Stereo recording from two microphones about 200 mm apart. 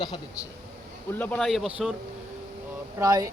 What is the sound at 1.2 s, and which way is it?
Speech, 5° left (ahead or behind).